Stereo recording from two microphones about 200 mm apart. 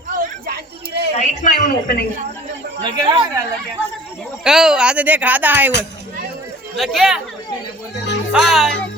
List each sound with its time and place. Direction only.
0.2 s a sound: 50° right (ahead or behind)
1.2 s a woman's voice: 40° left (ahead or behind)
2.8 s speech: 25° right (ahead or behind)
4.4 s speech: 5° right (ahead or behind)
6.7 s speech: centre (ahead or behind)
8.3 s speech: centre (ahead or behind)